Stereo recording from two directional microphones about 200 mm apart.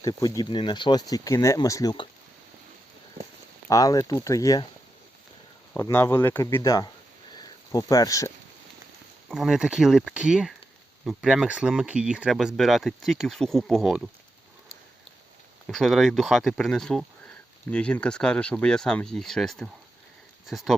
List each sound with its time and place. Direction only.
0.0 s speech: 20° left (ahead or behind)
3.7 s speech: 15° left (ahead or behind)
5.7 s speech: 10° left (ahead or behind)
7.3 s a sound: 15° left (ahead or behind)
9.3 s speech: centre (ahead or behind)
15.6 s speech: centre (ahead or behind)